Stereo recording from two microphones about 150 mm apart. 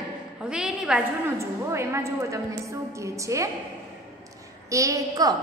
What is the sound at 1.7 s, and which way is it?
A woman's voice, 20° right (ahead or behind).